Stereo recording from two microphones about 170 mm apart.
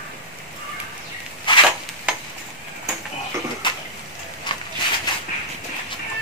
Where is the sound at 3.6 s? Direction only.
30° left (ahead or behind).